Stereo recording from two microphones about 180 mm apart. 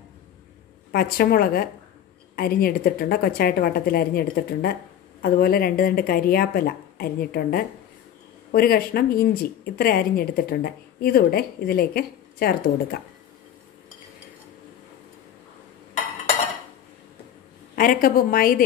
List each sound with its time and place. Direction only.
0.9 s speech: 55° left (ahead or behind)
17.7 s a woman's voice: 50° left (ahead or behind)